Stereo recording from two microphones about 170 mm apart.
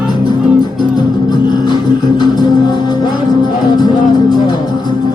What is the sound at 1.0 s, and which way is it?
Music, 25° left (ahead or behind).